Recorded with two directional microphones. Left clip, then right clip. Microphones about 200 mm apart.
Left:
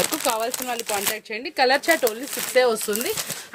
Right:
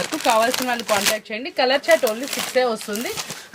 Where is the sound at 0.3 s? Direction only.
65° left (ahead or behind).